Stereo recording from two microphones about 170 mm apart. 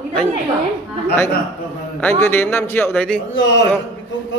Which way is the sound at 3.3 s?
90° left.